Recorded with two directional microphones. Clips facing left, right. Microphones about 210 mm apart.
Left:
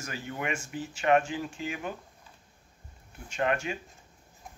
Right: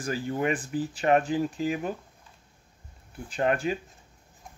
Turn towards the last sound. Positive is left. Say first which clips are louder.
# right 3 dB
turn(degrees=-35)  # may be behind; listen again after turning